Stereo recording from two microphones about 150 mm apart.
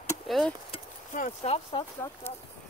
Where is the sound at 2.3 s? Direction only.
15° left (ahead or behind).